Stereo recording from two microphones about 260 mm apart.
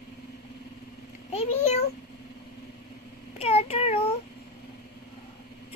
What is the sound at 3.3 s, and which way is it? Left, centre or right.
Child singing, left.